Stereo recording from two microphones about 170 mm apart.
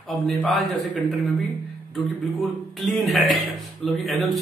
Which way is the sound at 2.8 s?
Centre (ahead or behind).